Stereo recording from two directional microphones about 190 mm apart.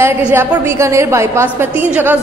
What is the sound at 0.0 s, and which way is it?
A woman's voice, 15° right (ahead or behind).